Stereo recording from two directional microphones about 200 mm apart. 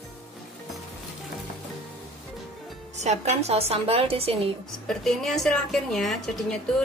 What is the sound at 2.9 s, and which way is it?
A woman's voice, 35° right (ahead or behind).